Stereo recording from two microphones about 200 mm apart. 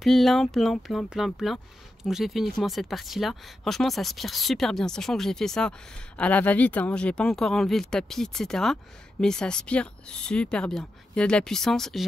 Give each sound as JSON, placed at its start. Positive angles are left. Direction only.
{"t": 0.0, "sound": "speech", "side_deg": 0}